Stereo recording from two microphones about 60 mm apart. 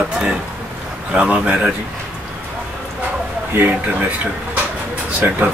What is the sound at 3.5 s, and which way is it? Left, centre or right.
Speech, right.